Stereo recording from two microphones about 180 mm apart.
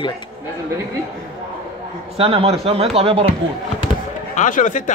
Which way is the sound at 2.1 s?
30° right (ahead or behind).